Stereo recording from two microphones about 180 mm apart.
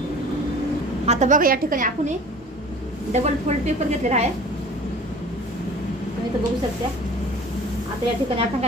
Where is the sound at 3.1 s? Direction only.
40° right (ahead or behind).